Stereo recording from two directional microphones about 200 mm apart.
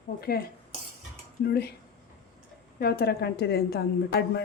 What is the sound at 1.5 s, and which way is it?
Speech, 55° left (ahead or behind).